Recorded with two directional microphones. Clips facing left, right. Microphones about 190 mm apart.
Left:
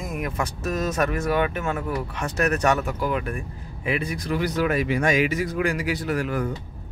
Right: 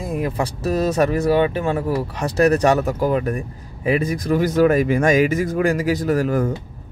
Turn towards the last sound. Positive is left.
turn(degrees=-45)  # may be behind; listen again after turning